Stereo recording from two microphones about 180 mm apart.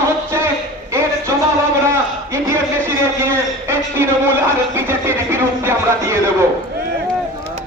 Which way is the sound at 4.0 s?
15° right (ahead or behind).